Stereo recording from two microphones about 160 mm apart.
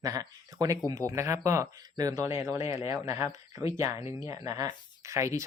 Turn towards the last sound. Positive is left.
turn(degrees=-20)  # may be behind; listen again after turning